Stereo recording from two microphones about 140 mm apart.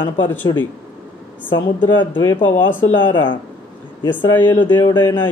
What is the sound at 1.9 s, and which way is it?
Speech, 30° left (ahead or behind).